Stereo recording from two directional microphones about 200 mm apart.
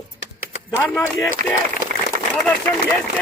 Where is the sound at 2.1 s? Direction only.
40° right (ahead or behind).